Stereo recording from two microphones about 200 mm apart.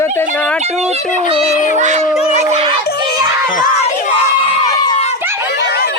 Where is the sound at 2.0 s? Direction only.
35° left (ahead or behind).